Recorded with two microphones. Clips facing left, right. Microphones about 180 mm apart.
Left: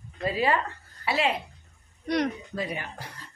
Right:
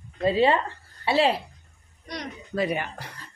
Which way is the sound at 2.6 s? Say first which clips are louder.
Right 7 dB; 70° right (ahead or behind).